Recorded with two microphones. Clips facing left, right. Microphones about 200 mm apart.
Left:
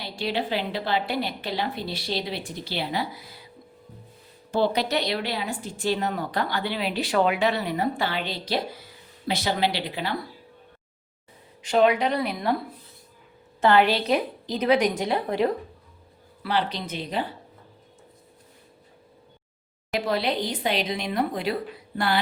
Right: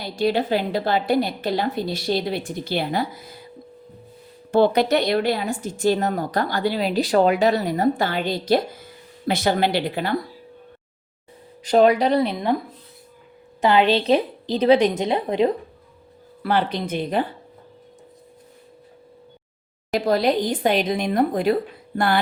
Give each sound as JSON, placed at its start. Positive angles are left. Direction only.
{"t": 0.0, "sound": "speech", "side_deg": -45}
{"t": 4.5, "sound": "speech", "side_deg": -55}
{"t": 11.6, "sound": "speech", "side_deg": -40}
{"t": 13.6, "sound": "a woman's voice", "side_deg": -15}
{"t": 16.4, "sound": "speech", "side_deg": -50}
{"t": 19.9, "sound": "speech", "side_deg": -40}